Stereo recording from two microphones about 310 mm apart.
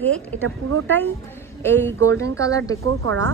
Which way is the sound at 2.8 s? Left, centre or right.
Right.